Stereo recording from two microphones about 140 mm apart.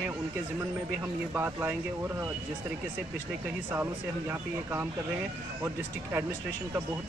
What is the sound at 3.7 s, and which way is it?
Speech, 20° right (ahead or behind).